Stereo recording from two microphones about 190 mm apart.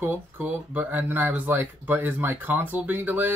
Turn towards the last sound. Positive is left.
turn(degrees=-10)  # may be behind; listen again after turning